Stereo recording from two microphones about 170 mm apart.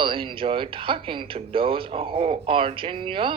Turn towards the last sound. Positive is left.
turn(degrees=-30)  # may be behind; listen again after turning